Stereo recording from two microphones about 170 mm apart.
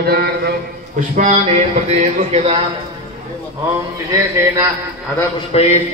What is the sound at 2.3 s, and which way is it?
Speech, 40° right (ahead or behind).